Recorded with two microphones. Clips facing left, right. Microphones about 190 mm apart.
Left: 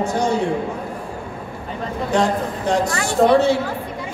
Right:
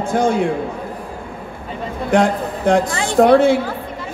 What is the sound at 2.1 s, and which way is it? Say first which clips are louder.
A man's voice: right 3 dB; 55° right (ahead or behind).